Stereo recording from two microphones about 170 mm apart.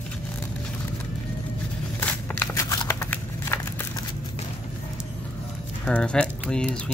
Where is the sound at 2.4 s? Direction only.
20° left (ahead or behind).